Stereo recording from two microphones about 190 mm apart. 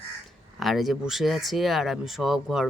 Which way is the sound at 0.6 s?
Centre (ahead or behind).